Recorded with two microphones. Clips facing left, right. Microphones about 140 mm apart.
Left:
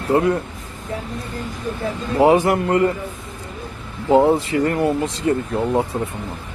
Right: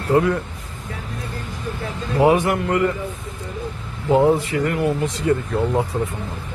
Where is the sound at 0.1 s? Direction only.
25° left (ahead or behind).